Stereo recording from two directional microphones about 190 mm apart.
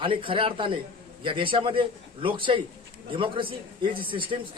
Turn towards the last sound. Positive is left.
turn(degrees=-25)  # may be behind; listen again after turning